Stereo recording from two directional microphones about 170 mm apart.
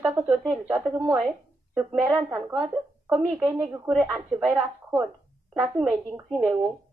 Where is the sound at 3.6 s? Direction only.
Centre (ahead or behind); by 6.2 s 20° right (ahead or behind).